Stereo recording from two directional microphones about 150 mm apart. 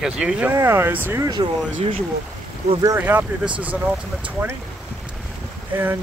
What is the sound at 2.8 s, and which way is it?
Speech, 15° right (ahead or behind).